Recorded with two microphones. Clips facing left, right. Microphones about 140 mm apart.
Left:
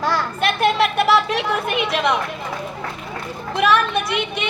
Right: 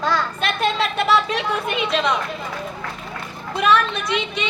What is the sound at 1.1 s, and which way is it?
Speech, 65° left (ahead or behind).